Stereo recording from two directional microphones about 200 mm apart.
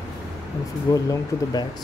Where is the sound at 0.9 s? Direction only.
20° left (ahead or behind).